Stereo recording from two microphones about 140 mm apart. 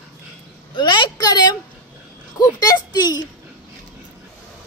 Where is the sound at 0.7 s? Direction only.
35° left (ahead or behind).